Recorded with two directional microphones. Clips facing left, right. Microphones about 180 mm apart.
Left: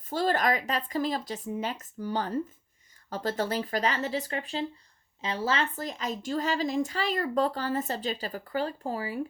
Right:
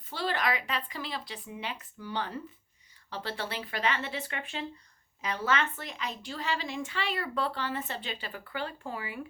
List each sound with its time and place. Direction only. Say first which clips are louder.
0.0 s a woman's voice: left 5 dB; 45° left (ahead or behind)